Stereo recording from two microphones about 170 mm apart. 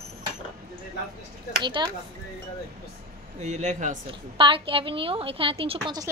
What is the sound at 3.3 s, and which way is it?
Speech, 40° right (ahead or behind).